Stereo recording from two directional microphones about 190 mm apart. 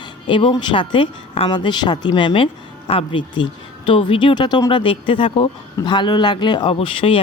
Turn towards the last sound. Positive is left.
turn(degrees=30)  # may be behind; listen again after turning